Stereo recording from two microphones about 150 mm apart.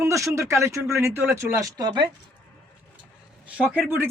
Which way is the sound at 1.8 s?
30° right (ahead or behind).